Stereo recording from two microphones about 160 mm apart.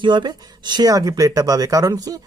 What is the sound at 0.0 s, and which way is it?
Speech, 30° right (ahead or behind).